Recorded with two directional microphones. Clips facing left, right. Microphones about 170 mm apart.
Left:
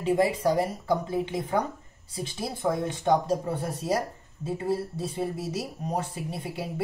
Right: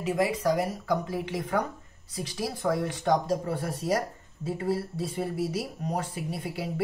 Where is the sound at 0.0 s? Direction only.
30° left (ahead or behind).